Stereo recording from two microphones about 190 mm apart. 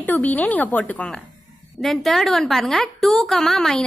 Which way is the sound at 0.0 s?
10° left (ahead or behind).